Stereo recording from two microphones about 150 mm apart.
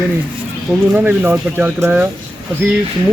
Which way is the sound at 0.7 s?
10° right (ahead or behind).